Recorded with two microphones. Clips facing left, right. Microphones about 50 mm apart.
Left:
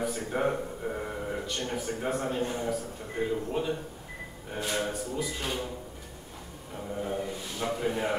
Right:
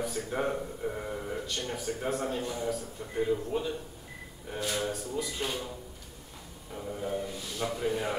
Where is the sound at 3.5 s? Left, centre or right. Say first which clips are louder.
Left 2 dB; left.